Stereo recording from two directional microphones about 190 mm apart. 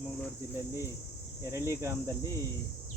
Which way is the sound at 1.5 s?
15° right (ahead or behind).